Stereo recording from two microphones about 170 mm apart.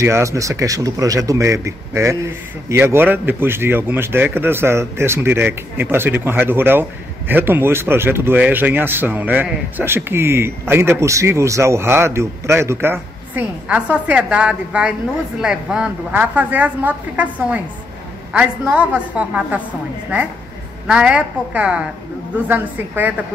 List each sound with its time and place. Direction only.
0.0 s speech: 15° right (ahead or behind)
20.8 s speech: 5° right (ahead or behind)